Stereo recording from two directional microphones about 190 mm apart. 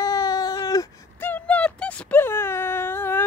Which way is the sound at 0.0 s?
20° left (ahead or behind).